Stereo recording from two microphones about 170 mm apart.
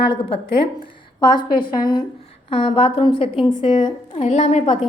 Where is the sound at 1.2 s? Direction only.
25° left (ahead or behind).